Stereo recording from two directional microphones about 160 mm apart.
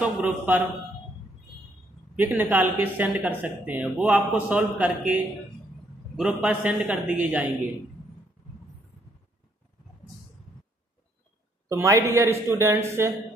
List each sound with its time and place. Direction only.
0.0 s a man's voice: 5° right (ahead or behind)
2.1 s a man's voice: 10° right (ahead or behind)
11.7 s a man's voice: 20° right (ahead or behind)